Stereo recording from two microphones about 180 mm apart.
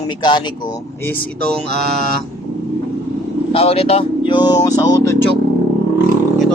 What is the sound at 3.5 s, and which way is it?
Speech, 35° left (ahead or behind).